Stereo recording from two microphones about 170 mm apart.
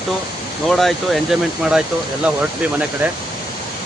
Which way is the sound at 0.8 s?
Centre (ahead or behind).